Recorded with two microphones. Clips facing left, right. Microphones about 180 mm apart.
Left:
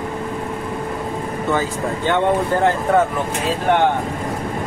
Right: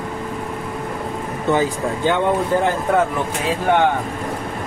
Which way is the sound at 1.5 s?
10° right (ahead or behind).